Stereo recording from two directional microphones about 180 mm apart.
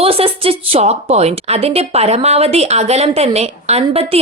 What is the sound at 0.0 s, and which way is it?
Speech, 30° right (ahead or behind).